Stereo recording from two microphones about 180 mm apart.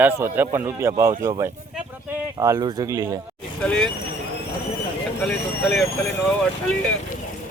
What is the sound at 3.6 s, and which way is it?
Speech, 5° left (ahead or behind).